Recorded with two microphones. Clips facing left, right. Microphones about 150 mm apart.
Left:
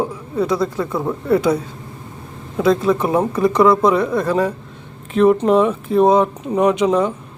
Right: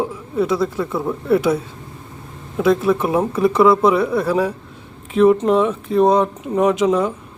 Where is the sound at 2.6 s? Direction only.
5° right (ahead or behind).